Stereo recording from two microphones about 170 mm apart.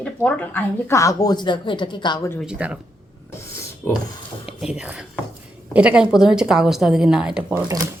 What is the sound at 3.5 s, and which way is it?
Filing, 15° left (ahead or behind).